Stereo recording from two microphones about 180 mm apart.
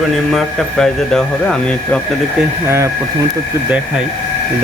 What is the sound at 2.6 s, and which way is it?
Speech, 15° right (ahead or behind).